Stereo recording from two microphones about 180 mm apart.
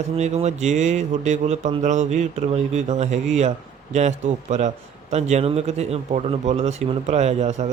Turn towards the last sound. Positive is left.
turn(degrees=-40)  # may be behind; listen again after turning